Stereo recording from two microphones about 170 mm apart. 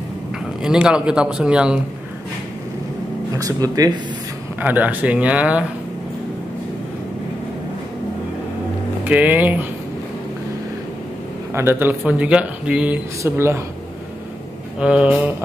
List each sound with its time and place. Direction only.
0.7 s speech: 5° right (ahead or behind)
3.3 s speech: 20° right (ahead or behind)
4.6 s speech: 10° right (ahead or behind)
9.0 s speech: 10° right (ahead or behind)
11.5 s speech: 15° right (ahead or behind)
14.8 s speech: 5° right (ahead or behind)